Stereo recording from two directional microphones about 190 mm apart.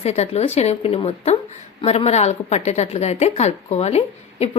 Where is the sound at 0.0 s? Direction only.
35° left (ahead or behind).